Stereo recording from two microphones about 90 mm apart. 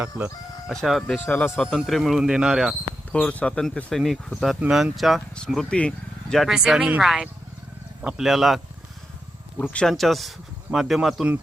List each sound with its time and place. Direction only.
0.1 s speech: 25° right (ahead or behind)
0.7 s speech: centre (ahead or behind)
1.1 s speech: 15° left (ahead or behind)
1.6 s speech: centre (ahead or behind)
3.1 s speech: 15° left (ahead or behind); by 5.2 s centre (ahead or behind)
5.7 s speech: 10° left (ahead or behind)
6.3 s speech: 5° right (ahead or behind)
9.6 s speech: 10° left (ahead or behind)
9.9 s speech: centre (ahead or behind)